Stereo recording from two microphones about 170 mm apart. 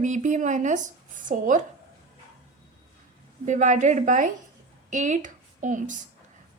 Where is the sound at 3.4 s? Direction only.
45° right (ahead or behind).